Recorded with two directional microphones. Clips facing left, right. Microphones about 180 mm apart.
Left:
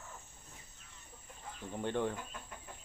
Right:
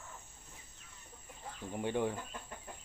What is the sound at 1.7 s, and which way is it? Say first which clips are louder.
Speech: right 1 dB; 10° right (ahead or behind).